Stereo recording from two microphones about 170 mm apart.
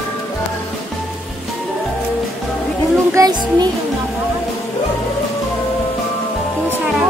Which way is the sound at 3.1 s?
20° right (ahead or behind).